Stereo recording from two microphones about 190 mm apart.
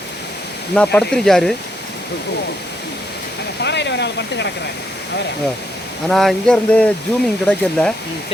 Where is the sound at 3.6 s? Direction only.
65° left (ahead or behind).